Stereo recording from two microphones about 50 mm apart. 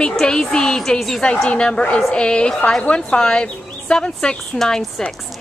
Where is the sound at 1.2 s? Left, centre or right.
Left.